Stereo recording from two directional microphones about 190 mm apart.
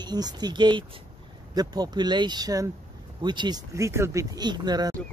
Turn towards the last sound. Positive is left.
turn(degrees=-20)  # may be behind; listen again after turning